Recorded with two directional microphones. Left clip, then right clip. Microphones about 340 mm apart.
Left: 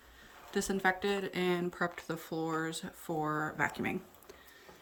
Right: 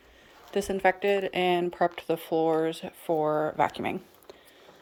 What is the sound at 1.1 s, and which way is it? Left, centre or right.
Speech, centre.